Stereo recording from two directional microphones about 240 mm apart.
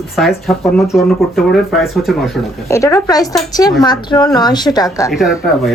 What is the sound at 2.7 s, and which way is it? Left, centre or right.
A woman's voice, centre.